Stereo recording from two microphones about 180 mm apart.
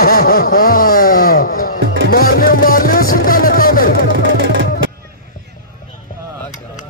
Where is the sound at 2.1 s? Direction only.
55° left (ahead or behind).